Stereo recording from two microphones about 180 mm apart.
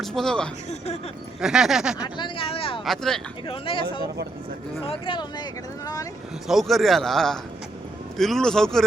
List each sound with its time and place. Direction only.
0.0 s a man's voice: centre (ahead or behind)
2.1 s speech: 30° left (ahead or behind)
2.8 s a man's voice: centre (ahead or behind)
3.4 s speech: 30° left (ahead or behind)
4.9 s speech: 25° left (ahead or behind)
6.5 s a man's voice: centre (ahead or behind)